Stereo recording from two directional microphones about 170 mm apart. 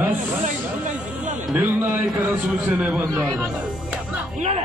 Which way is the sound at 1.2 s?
45° right (ahead or behind).